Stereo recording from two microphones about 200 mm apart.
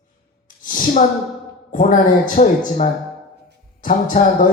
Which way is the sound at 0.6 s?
40° left (ahead or behind).